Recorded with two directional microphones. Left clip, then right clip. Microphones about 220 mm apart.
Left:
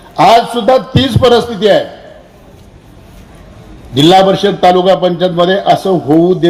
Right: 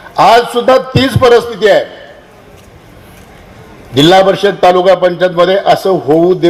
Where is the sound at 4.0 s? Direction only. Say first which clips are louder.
Even; 25° right (ahead or behind).